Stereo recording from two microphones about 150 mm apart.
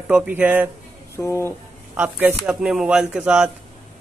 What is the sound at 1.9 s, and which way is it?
Speech, 10° right (ahead or behind).